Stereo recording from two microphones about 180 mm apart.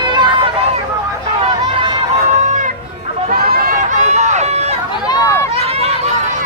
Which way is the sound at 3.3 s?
55° right (ahead or behind).